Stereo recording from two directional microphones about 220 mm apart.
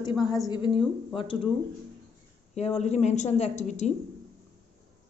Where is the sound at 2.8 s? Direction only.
30° left (ahead or behind).